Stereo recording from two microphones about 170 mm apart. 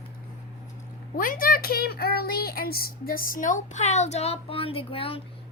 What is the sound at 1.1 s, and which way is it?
A child's voice, 55° left (ahead or behind).